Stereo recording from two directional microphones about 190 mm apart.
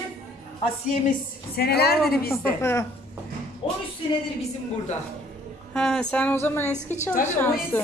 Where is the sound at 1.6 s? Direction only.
55° left (ahead or behind).